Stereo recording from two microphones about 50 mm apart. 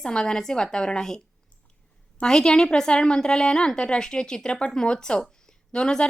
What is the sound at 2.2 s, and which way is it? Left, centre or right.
A woman's voice, centre.